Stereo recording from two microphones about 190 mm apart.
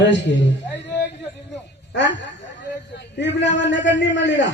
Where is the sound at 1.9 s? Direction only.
70° left (ahead or behind).